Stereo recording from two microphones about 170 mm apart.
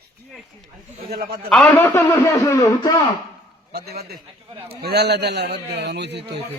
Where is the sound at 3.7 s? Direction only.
70° right (ahead or behind).